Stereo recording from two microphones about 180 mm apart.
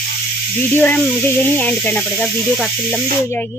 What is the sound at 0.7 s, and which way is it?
Speech, 10° left (ahead or behind).